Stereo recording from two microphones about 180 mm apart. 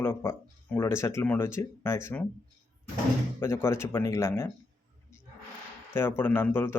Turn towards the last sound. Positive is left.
turn(degrees=10)  # may be behind; listen again after turning